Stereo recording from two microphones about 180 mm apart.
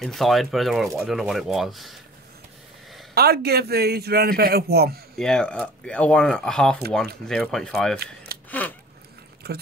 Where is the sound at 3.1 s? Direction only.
60° right (ahead or behind).